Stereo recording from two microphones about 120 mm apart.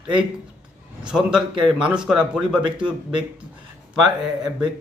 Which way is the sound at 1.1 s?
5° right (ahead or behind).